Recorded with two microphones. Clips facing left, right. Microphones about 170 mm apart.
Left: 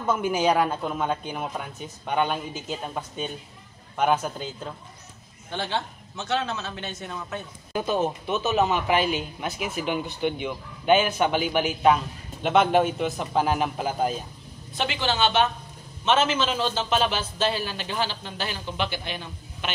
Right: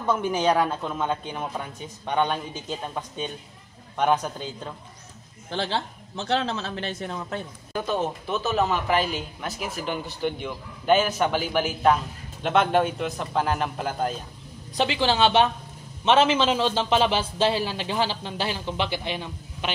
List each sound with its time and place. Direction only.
0.0 s speech: 5° left (ahead or behind)
6.1 s speech: 30° right (ahead or behind)
7.7 s speech: 5° left (ahead or behind)
14.7 s a man's voice: 35° right (ahead or behind)